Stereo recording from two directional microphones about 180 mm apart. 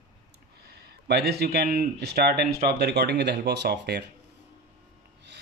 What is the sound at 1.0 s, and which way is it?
Speech, 65° right (ahead or behind).